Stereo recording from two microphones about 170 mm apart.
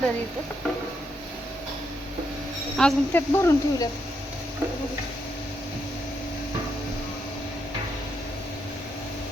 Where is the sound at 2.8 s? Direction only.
5° left (ahead or behind).